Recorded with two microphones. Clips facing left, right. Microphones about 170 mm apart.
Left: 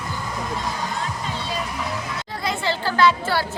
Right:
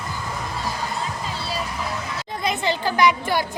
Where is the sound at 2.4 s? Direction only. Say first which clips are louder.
Right 2 dB; 20° right (ahead or behind).